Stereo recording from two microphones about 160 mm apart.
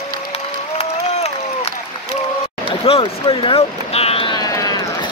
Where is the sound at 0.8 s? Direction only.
40° left (ahead or behind).